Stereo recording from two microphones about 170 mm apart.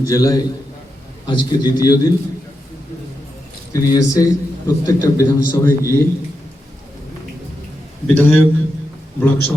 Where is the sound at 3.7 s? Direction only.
20° left (ahead or behind).